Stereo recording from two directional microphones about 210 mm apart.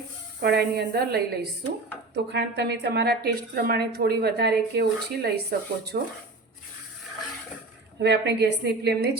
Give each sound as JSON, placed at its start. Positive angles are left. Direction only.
{"t": 0.4, "sound": "a woman's voice", "side_deg": -50}
{"t": 7.9, "sound": "a woman's voice", "side_deg": -55}